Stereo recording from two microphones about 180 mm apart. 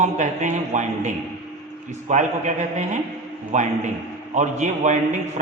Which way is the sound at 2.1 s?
45° right (ahead or behind).